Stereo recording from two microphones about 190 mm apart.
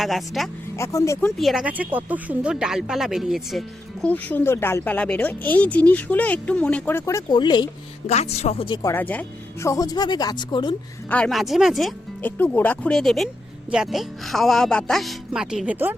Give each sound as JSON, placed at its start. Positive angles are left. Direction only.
{"t": 0.0, "sound": "speech", "side_deg": 0}
{"t": 0.8, "sound": "speech", "side_deg": 15}
{"t": 1.4, "sound": "speech", "side_deg": 0}
{"t": 8.0, "sound": "speech", "side_deg": 35}
{"t": 8.9, "sound": "speech", "side_deg": 10}
{"t": 11.1, "sound": "speech", "side_deg": 5}